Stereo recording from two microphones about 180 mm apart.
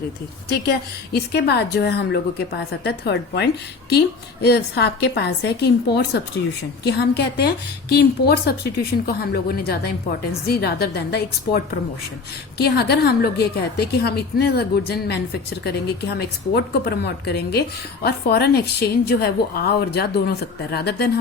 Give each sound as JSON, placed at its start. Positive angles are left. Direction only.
{"t": 0.4, "sound": "a woman's voice", "side_deg": 60}